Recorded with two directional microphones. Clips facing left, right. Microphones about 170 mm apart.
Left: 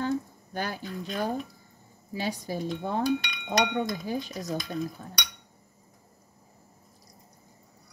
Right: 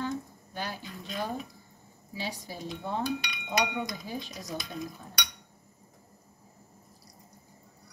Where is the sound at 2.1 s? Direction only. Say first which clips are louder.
Left 6 dB; 45° left (ahead or behind).